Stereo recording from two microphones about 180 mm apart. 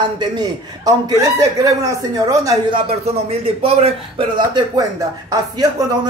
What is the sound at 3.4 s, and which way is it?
Speech, 35° right (ahead or behind).